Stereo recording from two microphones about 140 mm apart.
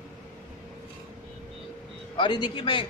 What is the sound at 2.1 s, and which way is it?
Speech, 35° left (ahead or behind).